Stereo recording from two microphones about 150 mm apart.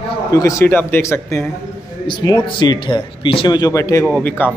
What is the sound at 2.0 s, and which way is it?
A man's voice, 30° left (ahead or behind).